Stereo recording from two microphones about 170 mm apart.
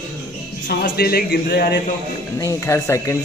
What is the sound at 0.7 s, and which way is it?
Speech, 65° left (ahead or behind).